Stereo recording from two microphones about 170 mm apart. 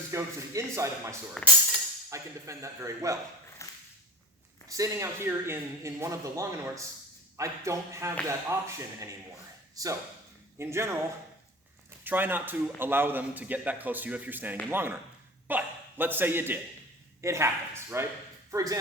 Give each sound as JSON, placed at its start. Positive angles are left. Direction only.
{"t": 0.1, "sound": "a man's voice", "side_deg": -15}
{"t": 1.4, "sound": "music", "side_deg": 5}
{"t": 2.0, "sound": "a man's voice", "side_deg": -15}
{"t": 3.6, "sound": "dog", "side_deg": 15}
{"t": 4.7, "sound": "a man's voice", "side_deg": -20}
{"t": 12.0, "sound": "a man's voice", "side_deg": -10}